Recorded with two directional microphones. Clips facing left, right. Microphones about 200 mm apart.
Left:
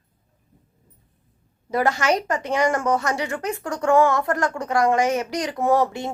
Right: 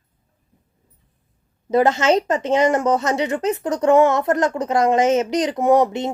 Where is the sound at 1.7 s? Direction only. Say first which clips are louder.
Right 5 dB; 20° right (ahead or behind).